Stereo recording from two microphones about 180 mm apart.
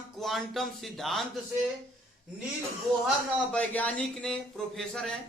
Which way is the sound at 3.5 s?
5° left (ahead or behind).